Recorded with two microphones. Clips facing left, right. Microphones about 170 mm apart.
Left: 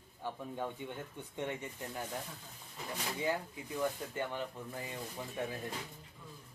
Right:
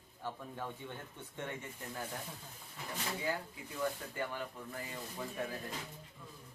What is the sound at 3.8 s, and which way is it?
Speech, 20° left (ahead or behind).